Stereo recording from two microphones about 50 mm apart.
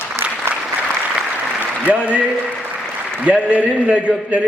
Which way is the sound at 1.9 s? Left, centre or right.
Right.